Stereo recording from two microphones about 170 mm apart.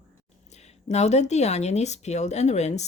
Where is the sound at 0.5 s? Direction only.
40° left (ahead or behind).